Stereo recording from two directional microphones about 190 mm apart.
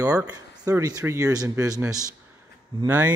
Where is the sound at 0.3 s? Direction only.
20° right (ahead or behind).